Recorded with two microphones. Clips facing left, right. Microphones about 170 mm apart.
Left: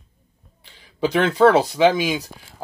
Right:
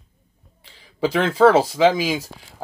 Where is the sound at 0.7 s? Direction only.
30° right (ahead or behind).